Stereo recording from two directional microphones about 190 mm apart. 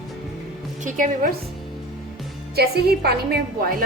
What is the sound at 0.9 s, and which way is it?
Speech, 45° right (ahead or behind).